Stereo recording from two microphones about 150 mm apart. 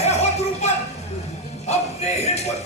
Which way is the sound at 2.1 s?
45° left (ahead or behind).